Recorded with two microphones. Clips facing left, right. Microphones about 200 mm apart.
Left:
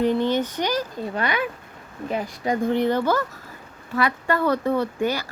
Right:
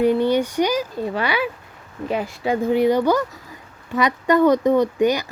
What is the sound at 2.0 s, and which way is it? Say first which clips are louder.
Speech: right 3 dB; 30° right (ahead or behind).